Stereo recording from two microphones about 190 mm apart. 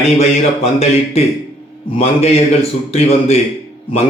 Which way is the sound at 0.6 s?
35° left (ahead or behind).